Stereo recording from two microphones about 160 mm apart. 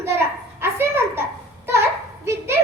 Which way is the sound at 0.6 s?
15° right (ahead or behind).